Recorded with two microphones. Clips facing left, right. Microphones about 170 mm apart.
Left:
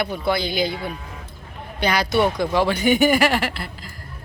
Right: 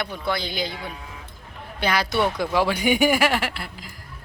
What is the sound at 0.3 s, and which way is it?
Speech, 5° left (ahead or behind).